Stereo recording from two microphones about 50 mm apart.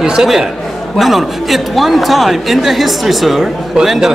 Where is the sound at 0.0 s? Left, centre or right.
Centre.